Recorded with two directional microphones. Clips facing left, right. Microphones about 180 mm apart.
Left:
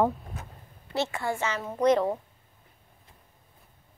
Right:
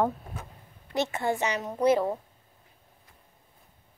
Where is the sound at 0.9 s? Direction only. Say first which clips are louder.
Right 2 dB; 20° right (ahead or behind).